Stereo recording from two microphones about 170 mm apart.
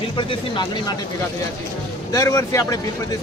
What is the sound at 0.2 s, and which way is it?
Speech, 30° left (ahead or behind).